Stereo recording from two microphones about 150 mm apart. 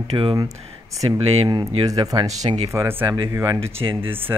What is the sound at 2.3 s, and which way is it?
Speech, 50° right (ahead or behind).